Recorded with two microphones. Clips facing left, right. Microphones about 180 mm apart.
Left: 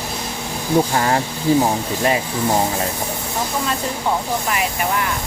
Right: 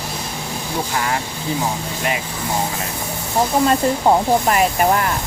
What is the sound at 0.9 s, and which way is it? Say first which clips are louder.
Speech: left 4 dB; 35° left (ahead or behind).